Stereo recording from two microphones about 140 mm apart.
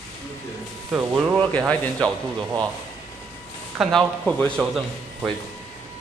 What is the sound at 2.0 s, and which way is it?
Speech, 25° right (ahead or behind).